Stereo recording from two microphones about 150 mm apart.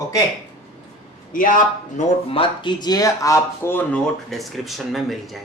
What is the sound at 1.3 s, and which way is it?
Speech, 65° left (ahead or behind).